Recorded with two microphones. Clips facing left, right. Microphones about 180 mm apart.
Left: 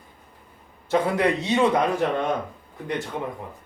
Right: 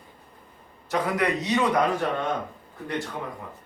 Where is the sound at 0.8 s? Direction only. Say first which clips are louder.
Left 4 dB; 25° left (ahead or behind).